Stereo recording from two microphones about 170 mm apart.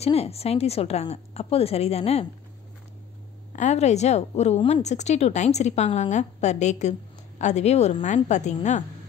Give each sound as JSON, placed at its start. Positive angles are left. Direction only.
{"t": 0.0, "sound": "a woman's voice", "side_deg": 35}
{"t": 3.5, "sound": "a woman's voice", "side_deg": 40}